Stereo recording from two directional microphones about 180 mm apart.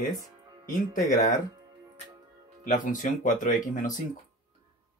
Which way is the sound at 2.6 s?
45° left (ahead or behind).